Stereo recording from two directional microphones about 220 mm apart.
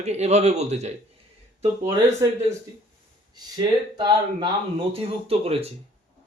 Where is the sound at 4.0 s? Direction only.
20° right (ahead or behind).